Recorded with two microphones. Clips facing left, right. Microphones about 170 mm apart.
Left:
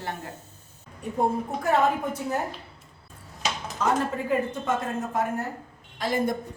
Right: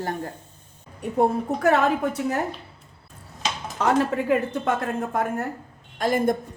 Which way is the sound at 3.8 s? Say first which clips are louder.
Right 4 dB; 70° right (ahead or behind).